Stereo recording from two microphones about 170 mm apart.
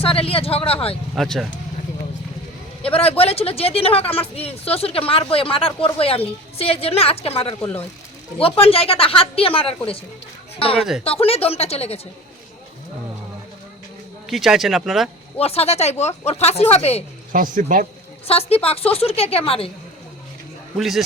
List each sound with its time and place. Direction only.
0.0 s speech: 35° left (ahead or behind)
1.1 s speech: centre (ahead or behind)
2.8 s speech: 35° left (ahead or behind)
14.3 s speech: centre (ahead or behind)
15.4 s speech: 35° left (ahead or behind)
17.3 s speech: 50° right (ahead or behind)
18.3 s speech: 35° left (ahead or behind)
20.7 s speech: centre (ahead or behind)